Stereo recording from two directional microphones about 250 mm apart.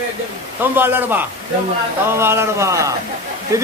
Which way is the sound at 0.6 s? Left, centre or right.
Centre.